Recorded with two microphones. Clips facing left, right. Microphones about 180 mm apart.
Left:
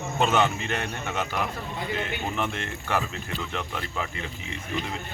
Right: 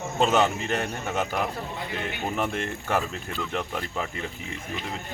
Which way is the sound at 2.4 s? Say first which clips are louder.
Right 2 dB; 45° right (ahead or behind).